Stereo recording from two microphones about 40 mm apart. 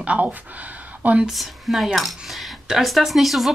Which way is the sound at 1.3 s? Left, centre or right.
Centre.